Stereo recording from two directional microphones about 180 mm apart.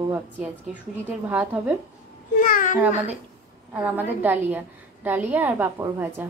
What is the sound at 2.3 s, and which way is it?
Speech, 50° left (ahead or behind).